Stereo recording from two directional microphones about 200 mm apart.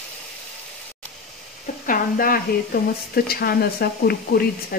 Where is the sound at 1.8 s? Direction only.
45° left (ahead or behind).